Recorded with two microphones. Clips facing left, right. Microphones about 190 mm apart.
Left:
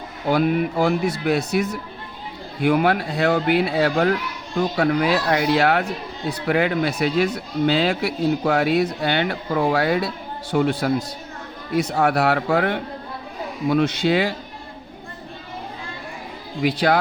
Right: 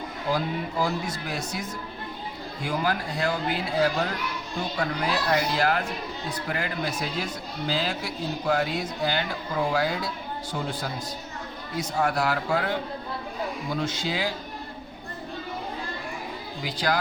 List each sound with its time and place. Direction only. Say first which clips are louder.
0.3 s speech: left 9 dB; 70° left (ahead or behind)
16.6 s speech: left 8 dB; 65° left (ahead or behind)